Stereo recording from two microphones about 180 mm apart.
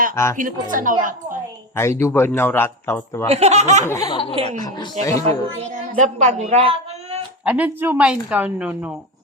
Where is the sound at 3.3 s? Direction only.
35° right (ahead or behind).